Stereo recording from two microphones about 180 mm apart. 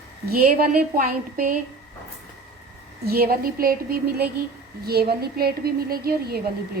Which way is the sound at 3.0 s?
55° right (ahead or behind).